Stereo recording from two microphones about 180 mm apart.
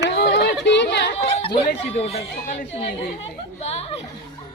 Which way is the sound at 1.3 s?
35° left (ahead or behind).